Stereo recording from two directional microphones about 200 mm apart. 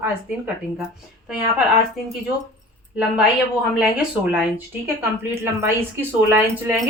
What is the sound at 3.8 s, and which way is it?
A woman's voice, 10° right (ahead or behind).